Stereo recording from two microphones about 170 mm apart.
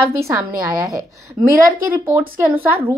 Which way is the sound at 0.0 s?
15° right (ahead or behind).